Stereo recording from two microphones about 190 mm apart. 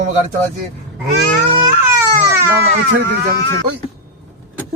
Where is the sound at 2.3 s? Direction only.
15° right (ahead or behind).